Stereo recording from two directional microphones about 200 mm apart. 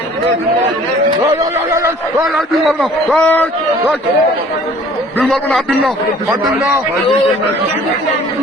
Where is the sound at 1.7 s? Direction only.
15° right (ahead or behind).